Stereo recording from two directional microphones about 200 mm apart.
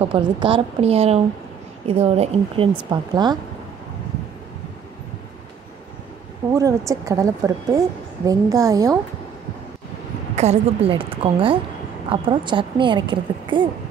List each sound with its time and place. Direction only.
0.0 s a woman's voice: 25° right (ahead or behind)
6.5 s a woman's voice: 15° right (ahead or behind)
10.3 s a woman's voice: 35° right (ahead or behind)